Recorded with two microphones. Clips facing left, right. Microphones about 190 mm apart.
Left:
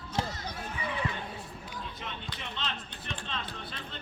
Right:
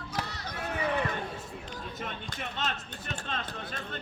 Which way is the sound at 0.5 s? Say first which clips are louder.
Right 4 dB; 70° right (ahead or behind).